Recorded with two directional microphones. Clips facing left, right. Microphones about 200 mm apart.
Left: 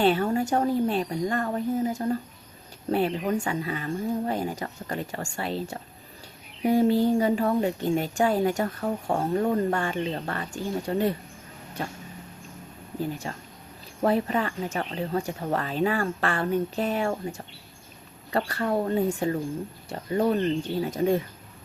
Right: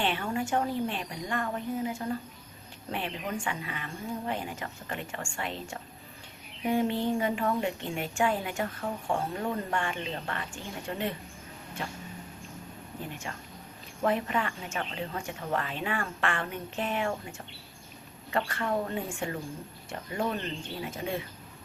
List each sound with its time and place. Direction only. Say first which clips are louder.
0.0 s a woman's voice: left 8 dB; 40° left (ahead or behind)
13.0 s a woman's voice: left 9 dB; 35° left (ahead or behind)